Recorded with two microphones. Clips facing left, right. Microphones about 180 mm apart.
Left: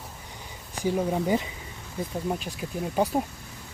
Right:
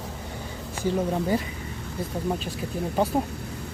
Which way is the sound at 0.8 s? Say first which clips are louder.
Even; 15° left (ahead or behind).